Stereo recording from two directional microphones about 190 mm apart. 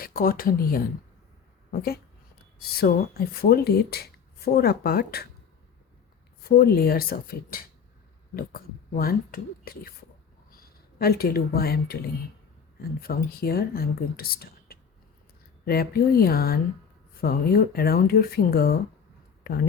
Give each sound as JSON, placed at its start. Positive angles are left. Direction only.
{"t": 0.0, "sound": "speech", "side_deg": 50}
{"t": 2.6, "sound": "speech", "side_deg": 55}
{"t": 6.4, "sound": "speech", "side_deg": 55}
{"t": 10.9, "sound": "speech", "side_deg": 55}
{"t": 13.0, "sound": "speech", "side_deg": 50}